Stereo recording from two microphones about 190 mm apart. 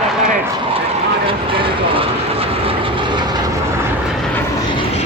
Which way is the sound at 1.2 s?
30° right (ahead or behind).